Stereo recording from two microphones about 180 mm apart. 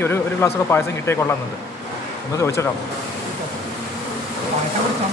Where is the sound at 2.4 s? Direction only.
15° left (ahead or behind).